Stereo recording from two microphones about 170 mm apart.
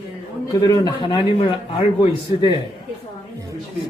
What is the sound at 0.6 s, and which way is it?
A man's voice, 25° left (ahead or behind).